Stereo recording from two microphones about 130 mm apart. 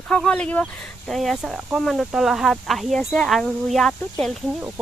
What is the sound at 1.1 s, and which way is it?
Speech, centre (ahead or behind).